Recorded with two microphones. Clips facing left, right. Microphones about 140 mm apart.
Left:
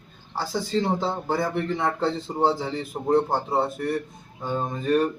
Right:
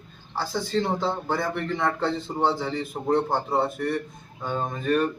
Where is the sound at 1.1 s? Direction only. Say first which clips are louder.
Left 1 dB; 5° left (ahead or behind).